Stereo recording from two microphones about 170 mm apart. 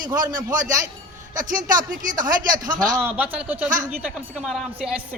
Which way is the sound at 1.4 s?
50° right (ahead or behind).